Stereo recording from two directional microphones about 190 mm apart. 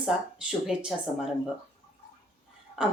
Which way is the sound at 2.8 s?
5° right (ahead or behind).